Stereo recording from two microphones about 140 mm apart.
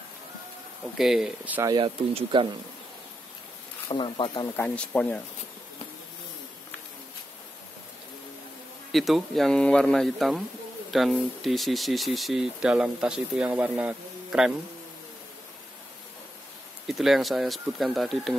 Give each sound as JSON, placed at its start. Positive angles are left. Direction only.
{"t": 0.9, "sound": "speech", "side_deg": 0}
{"t": 1.6, "sound": "speech", "side_deg": -25}
{"t": 3.9, "sound": "speech", "side_deg": 35}
{"t": 4.6, "sound": "speech", "side_deg": 10}
{"t": 8.9, "sound": "speech", "side_deg": 0}
{"t": 16.8, "sound": "speech", "side_deg": 0}